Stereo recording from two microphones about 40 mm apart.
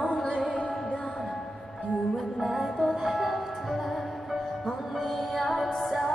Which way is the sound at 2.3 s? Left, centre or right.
Centre.